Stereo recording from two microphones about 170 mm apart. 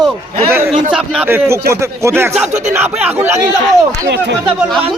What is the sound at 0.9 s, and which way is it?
Speech, 5° right (ahead or behind).